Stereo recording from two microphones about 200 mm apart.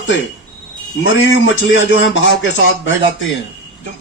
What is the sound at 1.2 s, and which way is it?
Speech, 70° left (ahead or behind).